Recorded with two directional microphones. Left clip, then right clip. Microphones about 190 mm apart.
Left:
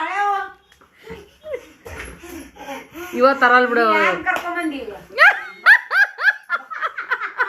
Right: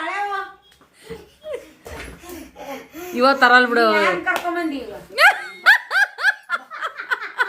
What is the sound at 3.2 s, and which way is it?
Speech, 15° right (ahead or behind).